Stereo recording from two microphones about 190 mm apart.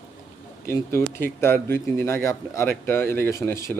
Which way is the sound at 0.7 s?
15° left (ahead or behind).